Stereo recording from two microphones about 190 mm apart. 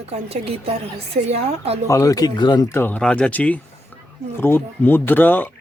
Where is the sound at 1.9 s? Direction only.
15° left (ahead or behind).